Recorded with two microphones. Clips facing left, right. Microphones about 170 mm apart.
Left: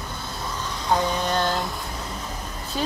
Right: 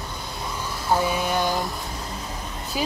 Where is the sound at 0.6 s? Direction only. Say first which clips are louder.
Even; 10° right (ahead or behind).